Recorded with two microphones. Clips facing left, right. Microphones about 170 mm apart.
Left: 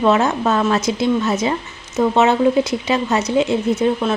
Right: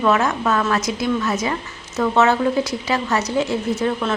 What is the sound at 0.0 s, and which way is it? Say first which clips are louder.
A woman's voice: left 3 dB; 25° left (ahead or behind).